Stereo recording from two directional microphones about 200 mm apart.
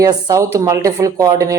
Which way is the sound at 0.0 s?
20° right (ahead or behind).